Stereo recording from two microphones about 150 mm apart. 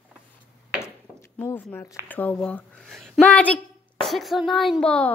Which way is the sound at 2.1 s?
10° left (ahead or behind).